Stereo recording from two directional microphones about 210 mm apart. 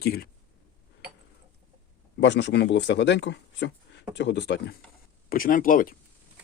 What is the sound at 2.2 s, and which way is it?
Speech, 55° left (ahead or behind).